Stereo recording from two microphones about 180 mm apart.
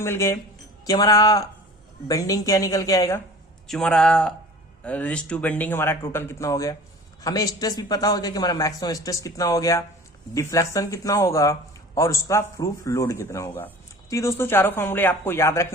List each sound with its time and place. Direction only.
0.0 s a man's voice: 15° left (ahead or behind)
3.7 s a man's voice: 5° left (ahead or behind)